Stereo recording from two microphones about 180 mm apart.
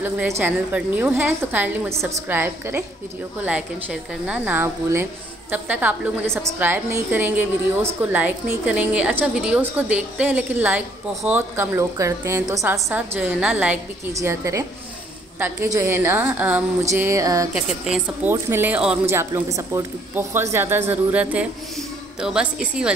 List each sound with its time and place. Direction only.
0.0 s a woman's voice: 10° right (ahead or behind)
17.6 s a woman's voice: 5° right (ahead or behind)